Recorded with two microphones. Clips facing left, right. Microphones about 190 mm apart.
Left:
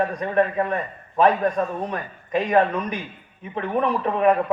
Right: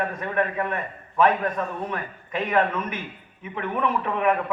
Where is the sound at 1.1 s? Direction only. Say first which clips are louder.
Left 3 dB; 30° left (ahead or behind).